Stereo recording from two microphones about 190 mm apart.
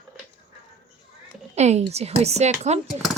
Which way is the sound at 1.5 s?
35° right (ahead or behind).